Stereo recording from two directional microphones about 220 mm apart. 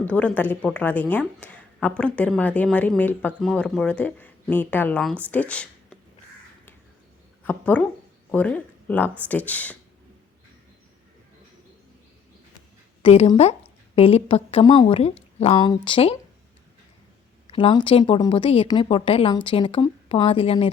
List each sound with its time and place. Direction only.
0.0 s a woman's voice: 5° left (ahead or behind)
1.4 s a sound: 5° left (ahead or behind)
2.0 s speech: 5° left (ahead or behind)
7.4 s a woman's voice: 5° left (ahead or behind)
13.0 s a woman's voice: 25° left (ahead or behind)
15.5 s a woman's voice: 20° left (ahead or behind)
17.4 s a woman's voice: 25° left (ahead or behind)